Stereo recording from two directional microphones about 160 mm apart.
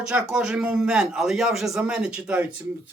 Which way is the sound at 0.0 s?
5° right (ahead or behind).